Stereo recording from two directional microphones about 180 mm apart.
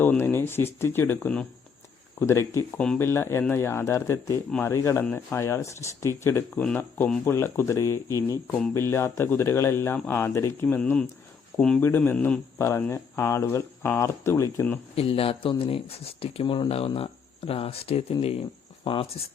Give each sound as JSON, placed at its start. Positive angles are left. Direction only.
{"t": 0.0, "sound": "speech", "side_deg": 10}
{"t": 14.9, "sound": "speech", "side_deg": 30}